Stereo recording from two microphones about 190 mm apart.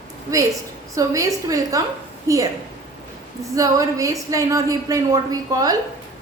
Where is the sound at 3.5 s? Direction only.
15° right (ahead or behind).